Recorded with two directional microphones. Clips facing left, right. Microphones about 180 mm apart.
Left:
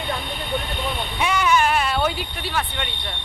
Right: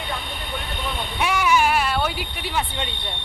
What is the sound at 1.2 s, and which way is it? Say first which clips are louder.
Sheep: even; 5° right (ahead or behind).